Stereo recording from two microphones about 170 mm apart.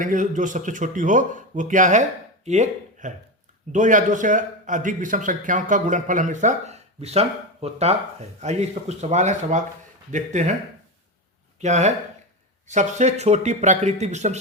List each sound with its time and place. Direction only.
0.0 s a man's voice: 50° right (ahead or behind)
11.6 s a man's voice: 45° right (ahead or behind)